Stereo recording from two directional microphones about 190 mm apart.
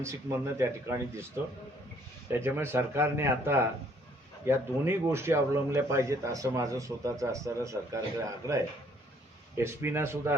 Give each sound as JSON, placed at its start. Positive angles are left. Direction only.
{"t": 0.0, "sound": "a man's voice", "side_deg": -15}
{"t": 2.3, "sound": "a man's voice", "side_deg": -15}